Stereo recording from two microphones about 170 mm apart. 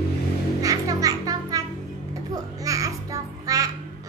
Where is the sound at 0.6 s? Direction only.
20° right (ahead or behind).